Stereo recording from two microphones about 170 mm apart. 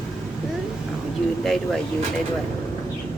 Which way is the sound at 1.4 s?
Centre (ahead or behind).